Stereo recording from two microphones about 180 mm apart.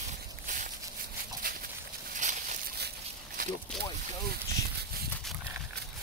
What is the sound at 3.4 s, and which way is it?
Boat, 50° right (ahead or behind).